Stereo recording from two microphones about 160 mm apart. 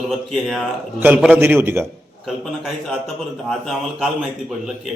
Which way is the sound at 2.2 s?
Centre (ahead or behind).